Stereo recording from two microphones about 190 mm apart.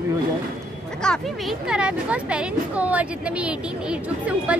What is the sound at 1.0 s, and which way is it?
Speech, 5° left (ahead or behind).